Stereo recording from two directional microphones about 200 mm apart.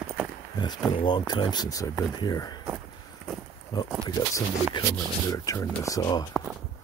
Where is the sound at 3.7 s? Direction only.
20° left (ahead or behind).